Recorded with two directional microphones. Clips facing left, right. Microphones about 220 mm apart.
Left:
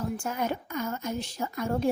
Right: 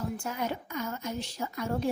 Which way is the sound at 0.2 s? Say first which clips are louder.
Left 3 dB; 50° left (ahead or behind).